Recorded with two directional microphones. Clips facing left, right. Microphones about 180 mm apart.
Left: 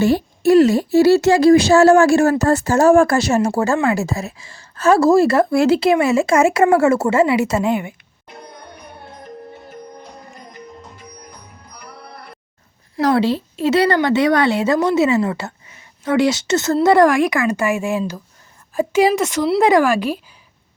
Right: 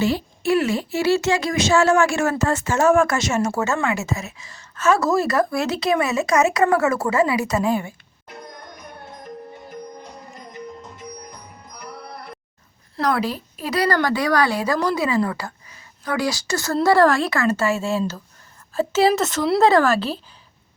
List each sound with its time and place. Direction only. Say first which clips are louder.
0.0 s a woman's voice: left 6 dB; 45° left (ahead or behind); by 7.9 s 20° left (ahead or behind)
13.0 s a woman's voice: left 6 dB; 30° left (ahead or behind); by 20.2 s 10° left (ahead or behind)